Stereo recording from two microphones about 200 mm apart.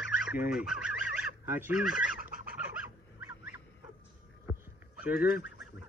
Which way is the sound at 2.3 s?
45° right (ahead or behind).